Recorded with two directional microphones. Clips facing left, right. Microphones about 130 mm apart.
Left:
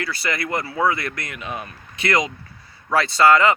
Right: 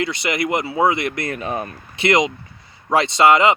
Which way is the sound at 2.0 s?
25° right (ahead or behind).